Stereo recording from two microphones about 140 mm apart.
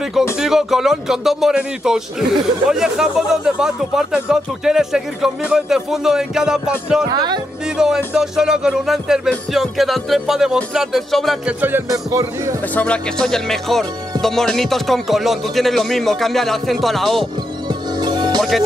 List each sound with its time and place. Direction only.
0.4 s speech: 5° right (ahead or behind)
7.1 s speech: 30° right (ahead or behind)
7.6 s speech: 5° right (ahead or behind)
11.9 s speech: 25° right (ahead or behind)
12.7 s speech: 10° left (ahead or behind)
17.6 s music: 30° right (ahead or behind)